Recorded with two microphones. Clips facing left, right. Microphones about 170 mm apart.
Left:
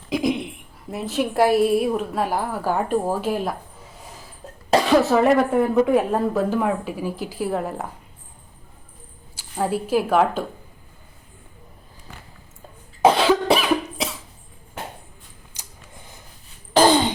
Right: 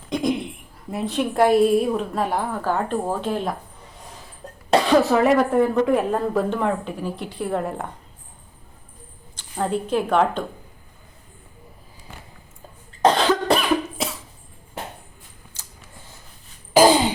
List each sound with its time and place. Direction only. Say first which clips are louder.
0.1 s a woman's voice: left 1 dB; centre (ahead or behind)
4.7 s speech: even; centre (ahead or behind)
9.3 s speech: even; 5° left (ahead or behind)
13.0 s cough: left 2 dB; 5° left (ahead or behind)
15.5 s a sound: left 2 dB; 15° left (ahead or behind)
16.7 s sigh: right 1 dB; 10° right (ahead or behind)